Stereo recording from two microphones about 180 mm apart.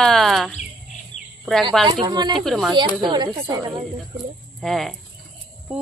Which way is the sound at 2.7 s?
25° right (ahead or behind).